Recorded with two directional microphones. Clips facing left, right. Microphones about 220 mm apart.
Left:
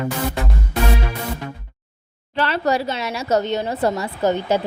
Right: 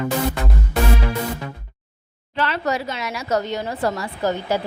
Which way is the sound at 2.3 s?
35° left (ahead or behind).